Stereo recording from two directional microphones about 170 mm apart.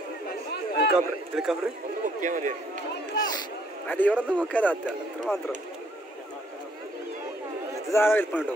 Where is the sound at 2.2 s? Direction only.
50° right (ahead or behind).